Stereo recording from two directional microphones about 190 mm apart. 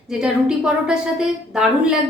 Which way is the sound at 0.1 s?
5° right (ahead or behind).